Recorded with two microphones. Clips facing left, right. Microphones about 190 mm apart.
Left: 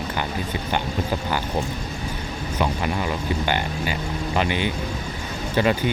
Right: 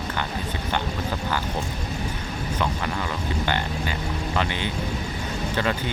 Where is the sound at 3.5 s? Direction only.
15° left (ahead or behind).